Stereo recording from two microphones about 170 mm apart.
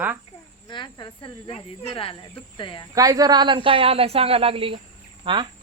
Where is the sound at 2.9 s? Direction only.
20° right (ahead or behind).